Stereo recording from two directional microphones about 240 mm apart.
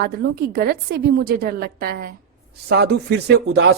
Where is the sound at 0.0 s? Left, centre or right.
Right.